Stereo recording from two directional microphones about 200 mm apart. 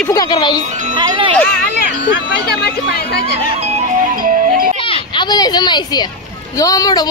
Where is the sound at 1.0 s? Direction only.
25° right (ahead or behind).